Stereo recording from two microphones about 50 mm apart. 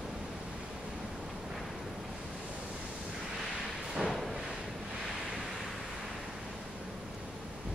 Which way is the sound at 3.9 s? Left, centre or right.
Centre.